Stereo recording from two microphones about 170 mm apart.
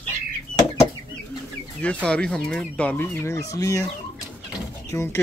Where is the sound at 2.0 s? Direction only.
5° left (ahead or behind).